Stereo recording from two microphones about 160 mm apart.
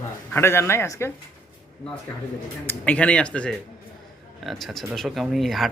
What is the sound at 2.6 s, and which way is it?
Speech, 10° left (ahead or behind).